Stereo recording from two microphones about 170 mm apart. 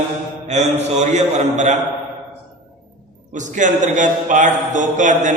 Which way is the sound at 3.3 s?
45° right (ahead or behind).